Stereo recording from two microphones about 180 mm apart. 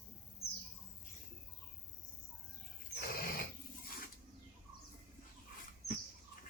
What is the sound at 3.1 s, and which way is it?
Roaring cats, 55° left (ahead or behind).